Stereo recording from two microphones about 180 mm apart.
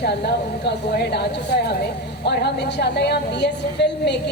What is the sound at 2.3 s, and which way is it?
Speech, 65° left (ahead or behind).